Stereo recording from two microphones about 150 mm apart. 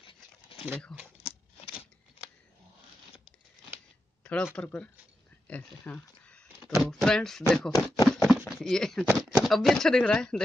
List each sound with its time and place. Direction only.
0.0 s crumpling: 35° left (ahead or behind)
0.9 s speech: centre (ahead or behind)
4.2 s a sound: 10° left (ahead or behind)
4.6 s speech: 10° left (ahead or behind)
8.1 s a sound: centre (ahead or behind)
8.5 s speech: 5° left (ahead or behind)